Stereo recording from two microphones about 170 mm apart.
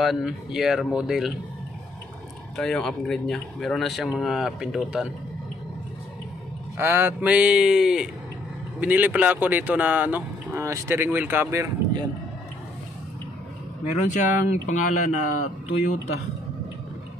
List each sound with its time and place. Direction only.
0.0 s speech: centre (ahead or behind)
2.5 s speech: 5° left (ahead or behind)
6.8 s speech: 15° right (ahead or behind)
14.0 s speech: 45° left (ahead or behind)